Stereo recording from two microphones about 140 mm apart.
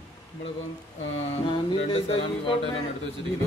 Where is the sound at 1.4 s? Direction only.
40° left (ahead or behind).